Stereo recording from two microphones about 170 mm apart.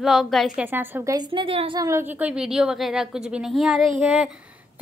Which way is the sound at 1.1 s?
25° right (ahead or behind).